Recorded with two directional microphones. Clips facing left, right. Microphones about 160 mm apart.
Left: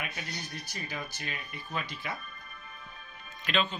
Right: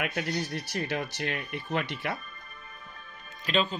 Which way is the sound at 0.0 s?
70° right (ahead or behind).